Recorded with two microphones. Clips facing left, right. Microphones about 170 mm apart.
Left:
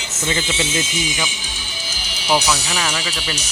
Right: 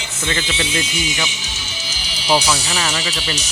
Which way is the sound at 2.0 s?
55° left (ahead or behind).